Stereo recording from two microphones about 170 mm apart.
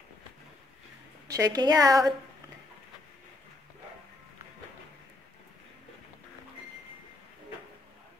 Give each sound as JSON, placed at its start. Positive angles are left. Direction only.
{"t": 1.2, "sound": "a woman's voice", "side_deg": -20}